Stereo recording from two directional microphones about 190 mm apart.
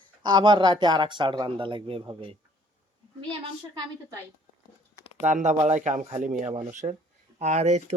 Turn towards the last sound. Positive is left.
turn(degrees=-40)  # may be behind; listen again after turning